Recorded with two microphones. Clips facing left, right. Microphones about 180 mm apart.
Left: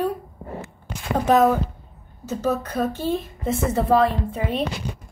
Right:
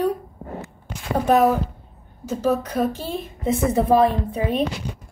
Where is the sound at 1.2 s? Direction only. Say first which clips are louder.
Even; 10° right (ahead or behind).